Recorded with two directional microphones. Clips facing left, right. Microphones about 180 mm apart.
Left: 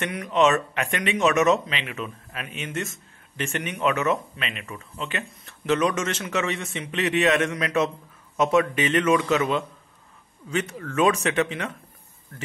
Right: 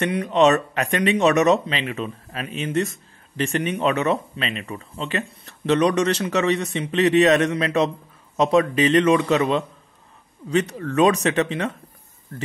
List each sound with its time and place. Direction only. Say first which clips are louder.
0.0 s speech: right 4 dB; 35° right (ahead or behind)